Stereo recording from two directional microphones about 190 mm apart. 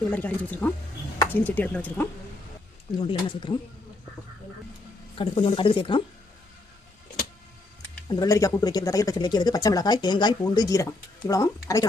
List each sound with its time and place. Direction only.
0.1 s speech: 10° left (ahead or behind)
3.0 s speech: 25° left (ahead or behind)
5.1 s speech: 25° left (ahead or behind)
8.2 s speech: 15° left (ahead or behind)